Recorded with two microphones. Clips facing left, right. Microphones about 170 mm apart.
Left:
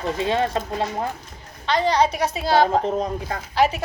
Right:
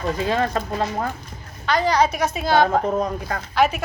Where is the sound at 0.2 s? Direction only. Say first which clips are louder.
Left 1 dB; 25° left (ahead or behind).